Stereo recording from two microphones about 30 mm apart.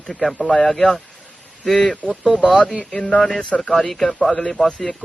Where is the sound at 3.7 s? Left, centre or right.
Centre.